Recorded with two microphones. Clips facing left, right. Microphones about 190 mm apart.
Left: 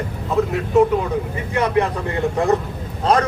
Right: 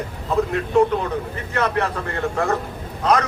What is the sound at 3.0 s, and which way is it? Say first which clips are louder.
Speech: left 2 dB; 30° left (ahead or behind).